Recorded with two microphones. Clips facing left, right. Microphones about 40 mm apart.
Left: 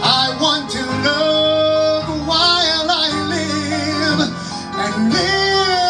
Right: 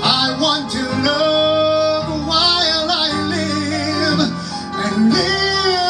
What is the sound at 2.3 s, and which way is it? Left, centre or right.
Music, left.